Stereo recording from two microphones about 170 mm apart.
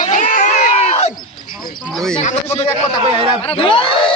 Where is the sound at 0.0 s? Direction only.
50° left (ahead or behind).